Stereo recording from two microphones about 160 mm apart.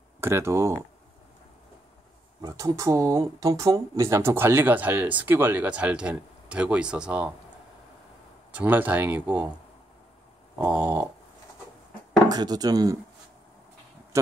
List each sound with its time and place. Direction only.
0.2 s speech: 15° right (ahead or behind)
2.4 s speech: 20° right (ahead or behind)
8.5 s speech: 10° right (ahead or behind)
10.6 s speech: 10° right (ahead or behind)
12.3 s speech: 25° right (ahead or behind)